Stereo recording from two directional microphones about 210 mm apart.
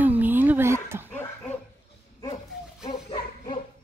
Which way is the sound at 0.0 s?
10° right (ahead or behind).